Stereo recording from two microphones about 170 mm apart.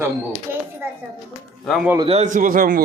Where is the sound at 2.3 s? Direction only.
50° right (ahead or behind).